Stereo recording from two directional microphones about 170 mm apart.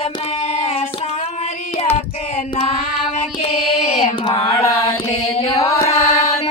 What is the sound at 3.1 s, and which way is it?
Carnatic music, 40° left (ahead or behind).